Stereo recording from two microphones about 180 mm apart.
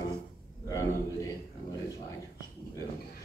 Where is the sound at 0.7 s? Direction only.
20° left (ahead or behind).